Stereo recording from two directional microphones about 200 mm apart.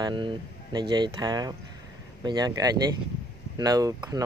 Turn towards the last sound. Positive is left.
turn(degrees=-20)  # may be behind; listen again after turning